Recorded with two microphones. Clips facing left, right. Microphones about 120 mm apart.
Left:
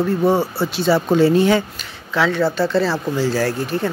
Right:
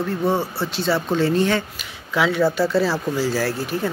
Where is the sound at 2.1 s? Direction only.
10° right (ahead or behind).